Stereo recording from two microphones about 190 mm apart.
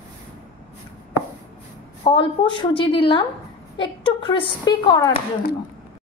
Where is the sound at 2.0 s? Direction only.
25° left (ahead or behind).